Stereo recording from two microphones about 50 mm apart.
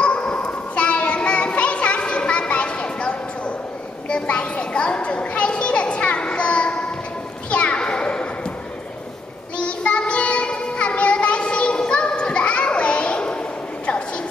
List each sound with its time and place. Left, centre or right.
0.0 s children playing: left
4.1 s a sound: left
7.5 s children playing: left
9.6 s child singing: left